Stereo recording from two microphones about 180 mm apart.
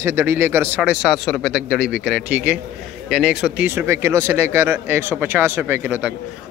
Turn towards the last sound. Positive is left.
turn(degrees=-10)  # may be behind; listen again after turning